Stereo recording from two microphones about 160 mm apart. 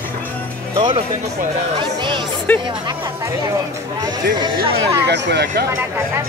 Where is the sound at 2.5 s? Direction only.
10° left (ahead or behind).